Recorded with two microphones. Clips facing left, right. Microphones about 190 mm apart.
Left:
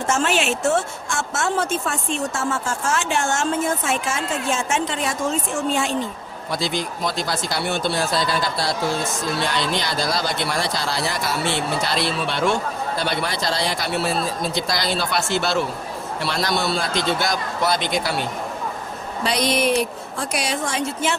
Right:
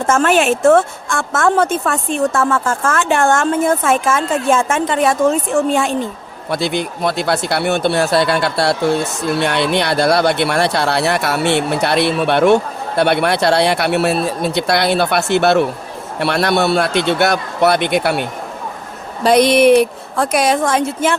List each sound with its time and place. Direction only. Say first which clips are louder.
0.0 s a woman's voice: right 7 dB; 55° right (ahead or behind)